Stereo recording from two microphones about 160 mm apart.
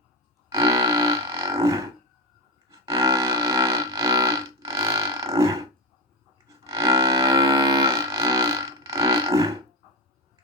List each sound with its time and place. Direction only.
0.5 s a sound: 20° right (ahead or behind)
2.6 s music: 20° right (ahead or behind)
6.7 s music: 20° right (ahead or behind)